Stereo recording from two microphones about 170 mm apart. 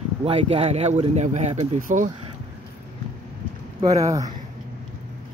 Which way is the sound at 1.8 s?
50° right (ahead or behind).